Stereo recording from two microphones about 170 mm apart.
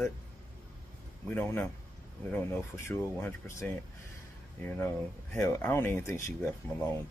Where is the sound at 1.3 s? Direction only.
10° left (ahead or behind).